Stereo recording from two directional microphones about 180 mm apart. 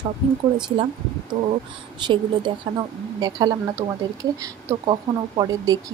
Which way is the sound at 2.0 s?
25° right (ahead or behind).